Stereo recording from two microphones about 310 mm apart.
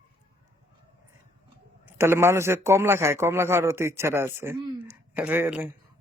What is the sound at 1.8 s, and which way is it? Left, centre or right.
A man's voice, centre.